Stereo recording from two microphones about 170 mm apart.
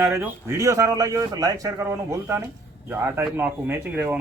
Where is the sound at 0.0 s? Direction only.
15° right (ahead or behind).